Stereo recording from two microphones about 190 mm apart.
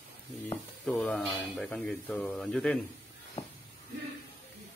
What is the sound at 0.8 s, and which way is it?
Speech, 5° left (ahead or behind).